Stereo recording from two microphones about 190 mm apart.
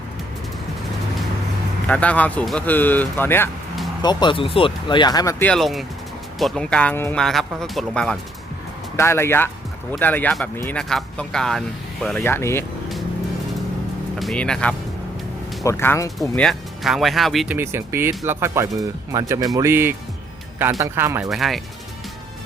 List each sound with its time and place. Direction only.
1.9 s speech: 5° left (ahead or behind)
4.0 s speech: 25° left (ahead or behind)
5.5 s speech: centre (ahead or behind)
9.0 s speech: 15° left (ahead or behind)
14.2 s speech: centre (ahead or behind)
17.6 s speech: 15° right (ahead or behind)
21.2 s speech: centre (ahead or behind)